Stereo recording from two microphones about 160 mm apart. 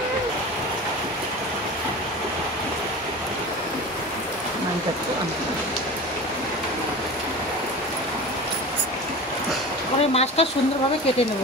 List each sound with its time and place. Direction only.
10.1 s speech: 40° left (ahead or behind)